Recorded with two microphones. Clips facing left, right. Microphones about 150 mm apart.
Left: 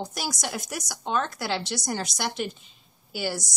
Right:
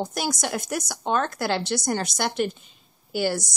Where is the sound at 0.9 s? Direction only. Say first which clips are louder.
Right 2 dB; 50° right (ahead or behind).